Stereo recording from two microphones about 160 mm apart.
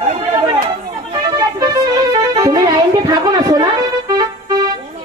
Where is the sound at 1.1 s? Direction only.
20° right (ahead or behind).